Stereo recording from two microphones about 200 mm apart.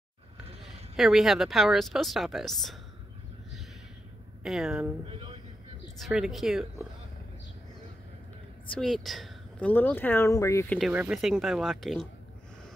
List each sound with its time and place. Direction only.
0.9 s speech: centre (ahead or behind)
4.4 s speech: centre (ahead or behind)
5.0 s a man's voice: 25° right (ahead or behind)
5.9 s speech: centre (ahead or behind)
8.7 s speech: centre (ahead or behind)
10.8 s speech: 5° right (ahead or behind)